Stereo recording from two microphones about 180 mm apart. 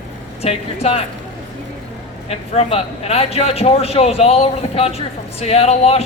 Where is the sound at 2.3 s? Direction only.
35° left (ahead or behind).